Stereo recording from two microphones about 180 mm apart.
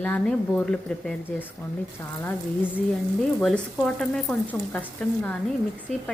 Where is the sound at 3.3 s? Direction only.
5° left (ahead or behind).